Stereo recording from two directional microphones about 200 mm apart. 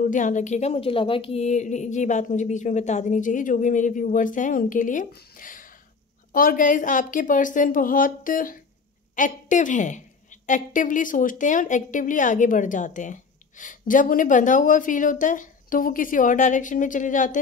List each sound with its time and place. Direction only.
0.0 s a woman's voice: 40° left (ahead or behind)